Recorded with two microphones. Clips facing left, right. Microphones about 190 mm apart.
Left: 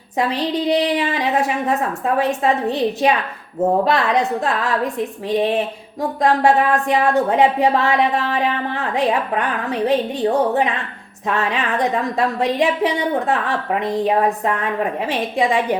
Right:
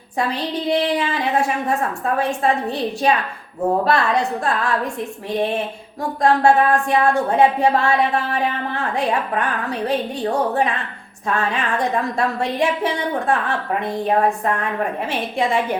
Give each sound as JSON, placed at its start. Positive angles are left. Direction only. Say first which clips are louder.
{"t": 0.7, "sound": "a woman's voice", "louder": "right 1 dB", "side_deg": 15}